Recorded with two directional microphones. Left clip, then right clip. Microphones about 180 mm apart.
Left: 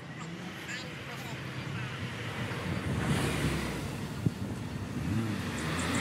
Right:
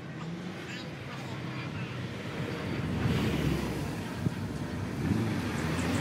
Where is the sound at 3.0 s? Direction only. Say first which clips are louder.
Even; 20° left (ahead or behind).